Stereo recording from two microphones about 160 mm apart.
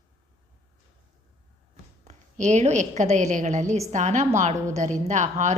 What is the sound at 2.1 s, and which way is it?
A woman's voice, 45° right (ahead or behind).